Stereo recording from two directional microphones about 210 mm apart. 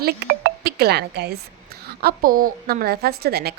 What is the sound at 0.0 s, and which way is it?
A woman's voice, 50° right (ahead or behind).